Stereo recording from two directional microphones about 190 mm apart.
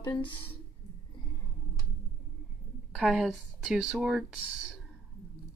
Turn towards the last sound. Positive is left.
turn(degrees=-5)  # may be behind; listen again after turning